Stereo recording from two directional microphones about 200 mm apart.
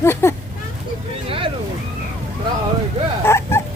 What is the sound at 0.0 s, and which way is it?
Speech, 10° left (ahead or behind).